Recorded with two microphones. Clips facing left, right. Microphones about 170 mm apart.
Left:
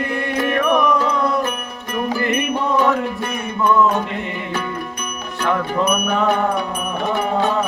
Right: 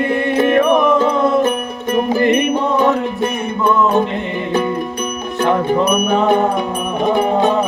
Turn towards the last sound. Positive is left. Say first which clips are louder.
# right 5 dB
turn(degrees=-20)  # may be behind; listen again after turning